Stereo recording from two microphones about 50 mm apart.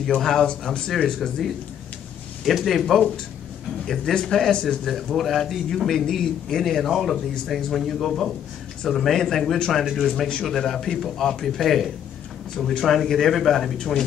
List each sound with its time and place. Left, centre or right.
0.0 s speech: centre
0.5 s speech: centre
2.4 s a man's voice: centre
5.1 s a man's voice: centre